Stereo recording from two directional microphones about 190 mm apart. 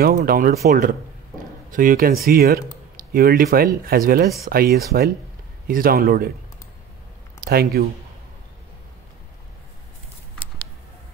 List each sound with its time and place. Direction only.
0.0 s speech: 50° right (ahead or behind)
7.3 s speech: 50° right (ahead or behind)